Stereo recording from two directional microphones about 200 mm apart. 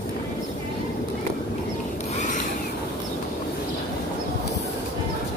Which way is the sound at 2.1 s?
35° left (ahead or behind).